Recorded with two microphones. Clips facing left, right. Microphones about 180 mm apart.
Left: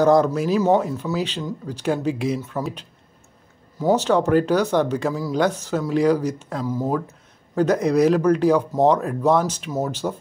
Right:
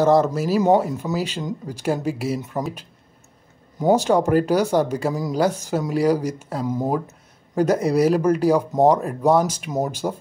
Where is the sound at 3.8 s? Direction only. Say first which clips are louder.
Right 1 dB; 15° right (ahead or behind).